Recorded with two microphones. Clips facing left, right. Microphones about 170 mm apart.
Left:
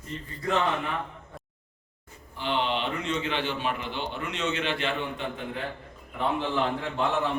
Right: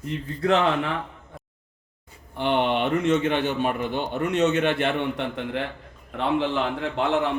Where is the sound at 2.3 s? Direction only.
55° right (ahead or behind); by 7.2 s 75° right (ahead or behind).